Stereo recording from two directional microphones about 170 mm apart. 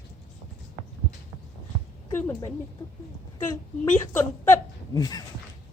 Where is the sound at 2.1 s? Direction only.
15° left (ahead or behind).